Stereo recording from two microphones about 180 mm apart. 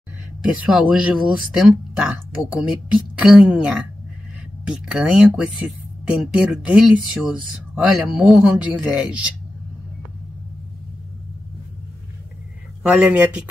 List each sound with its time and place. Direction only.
0.4 s speech: 5° right (ahead or behind)
12.8 s speech: 10° right (ahead or behind)